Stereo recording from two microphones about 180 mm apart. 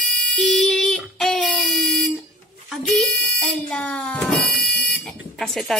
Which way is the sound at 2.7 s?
Centre (ahead or behind).